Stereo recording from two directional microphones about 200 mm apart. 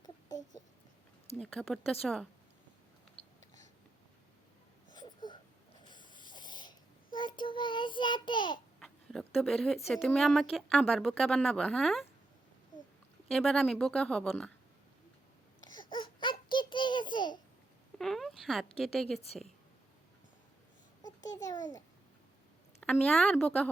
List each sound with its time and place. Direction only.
0.0 s a sound: 20° left (ahead or behind)
1.4 s speech: centre (ahead or behind)
4.9 s wheeze: 20° left (ahead or behind)
5.9 s a sound: 20° left (ahead or behind)
8.8 s speech: centre (ahead or behind)
13.2 s speech: centre (ahead or behind)
15.9 s baby cry: 25° left (ahead or behind)
16.5 s a sound: 25° left (ahead or behind)
17.9 s speech: centre (ahead or behind)
21.2 s a child's voice: 20° left (ahead or behind)
22.8 s speech: 5° left (ahead or behind)